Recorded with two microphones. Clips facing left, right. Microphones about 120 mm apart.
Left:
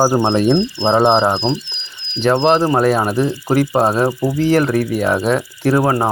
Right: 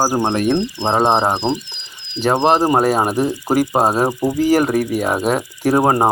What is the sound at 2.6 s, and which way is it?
Speech, 15° right (ahead or behind).